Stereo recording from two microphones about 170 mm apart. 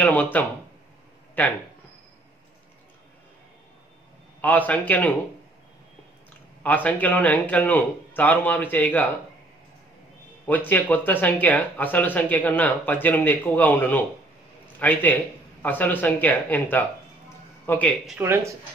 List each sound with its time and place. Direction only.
0.0 s speech: 10° left (ahead or behind)
4.4 s speech: 10° left (ahead or behind)
6.6 s speech: 10° left (ahead or behind)
10.7 s speech: 10° left (ahead or behind)
18.2 s speech: 15° right (ahead or behind)